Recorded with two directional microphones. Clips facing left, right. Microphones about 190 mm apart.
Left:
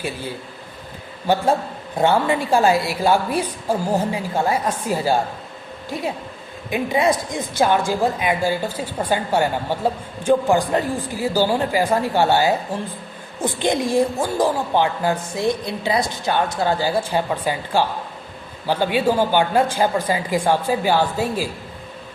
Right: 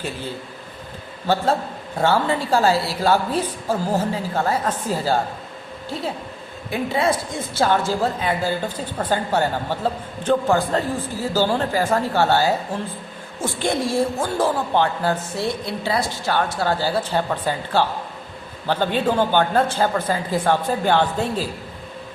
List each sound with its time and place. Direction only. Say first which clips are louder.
1.3 s a woman's voice: left 2 dB; 15° left (ahead or behind)
6.7 s a woman's voice: left 2 dB; 15° left (ahead or behind)